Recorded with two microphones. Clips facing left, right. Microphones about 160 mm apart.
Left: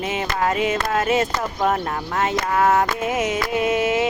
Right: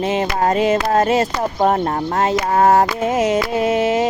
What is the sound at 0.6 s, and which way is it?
Music, 35° right (ahead or behind).